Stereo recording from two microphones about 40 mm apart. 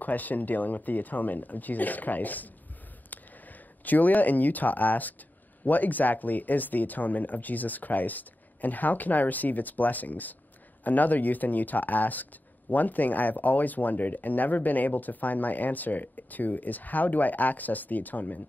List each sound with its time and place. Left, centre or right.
0.0 s speech: left
3.8 s speech: left